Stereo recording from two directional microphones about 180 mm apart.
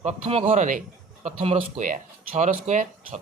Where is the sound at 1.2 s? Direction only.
35° right (ahead or behind).